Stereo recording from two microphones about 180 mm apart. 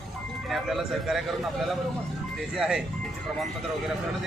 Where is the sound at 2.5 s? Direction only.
5° right (ahead or behind).